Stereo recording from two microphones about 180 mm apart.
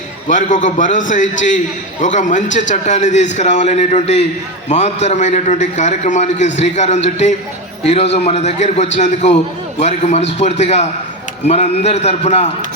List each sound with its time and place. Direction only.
0.3 s a man's voice: 45° left (ahead or behind)